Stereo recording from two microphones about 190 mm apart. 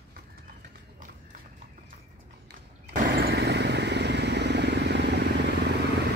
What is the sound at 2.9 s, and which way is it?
Vehicle, 55° right (ahead or behind).